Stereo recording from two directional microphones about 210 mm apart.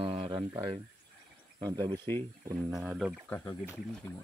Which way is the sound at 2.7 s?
Centre (ahead or behind).